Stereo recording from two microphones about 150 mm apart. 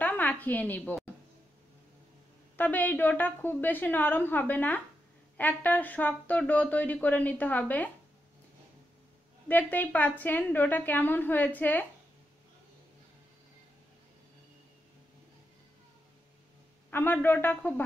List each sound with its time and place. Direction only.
0.0 s a sound: 10° left (ahead or behind)
2.5 s speech: 10° left (ahead or behind)
9.5 s speech: 10° left (ahead or behind)
16.9 s speech: 15° left (ahead or behind)